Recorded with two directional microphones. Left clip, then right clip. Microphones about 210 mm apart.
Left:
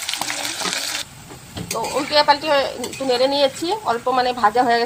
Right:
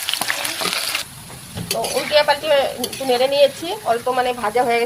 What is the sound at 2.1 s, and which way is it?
Speech, 15° left (ahead or behind).